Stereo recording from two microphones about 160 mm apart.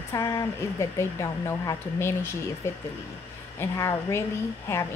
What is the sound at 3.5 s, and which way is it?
Speech, 15° left (ahead or behind).